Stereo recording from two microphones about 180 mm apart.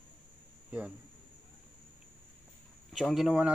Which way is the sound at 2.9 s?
Centre (ahead or behind).